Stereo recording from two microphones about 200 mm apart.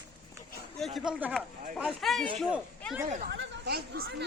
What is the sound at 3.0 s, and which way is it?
Speech, 40° right (ahead or behind).